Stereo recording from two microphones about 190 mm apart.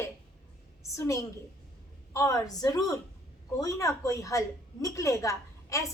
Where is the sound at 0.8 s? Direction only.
15° left (ahead or behind).